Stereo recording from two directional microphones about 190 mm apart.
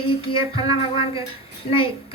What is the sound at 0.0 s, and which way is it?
A woman's voice, 30° left (ahead or behind).